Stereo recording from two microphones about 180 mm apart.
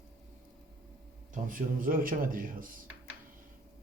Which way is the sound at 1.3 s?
50° right (ahead or behind).